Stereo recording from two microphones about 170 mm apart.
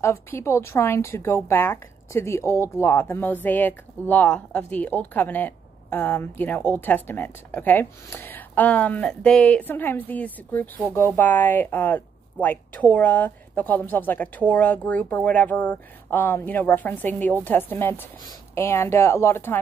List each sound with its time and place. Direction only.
0.0 s speech: 15° left (ahead or behind)